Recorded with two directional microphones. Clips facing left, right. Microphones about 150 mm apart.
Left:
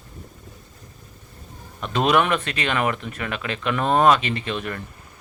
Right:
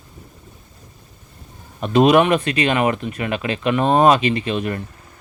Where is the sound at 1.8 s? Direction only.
20° right (ahead or behind).